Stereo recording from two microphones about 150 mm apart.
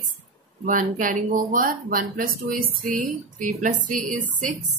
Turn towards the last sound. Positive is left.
turn(degrees=-60)  # may be behind; listen again after turning